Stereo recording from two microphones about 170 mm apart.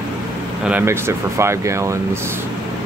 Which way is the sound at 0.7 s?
10° right (ahead or behind).